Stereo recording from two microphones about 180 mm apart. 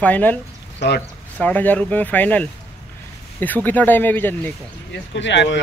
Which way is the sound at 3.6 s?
10° left (ahead or behind).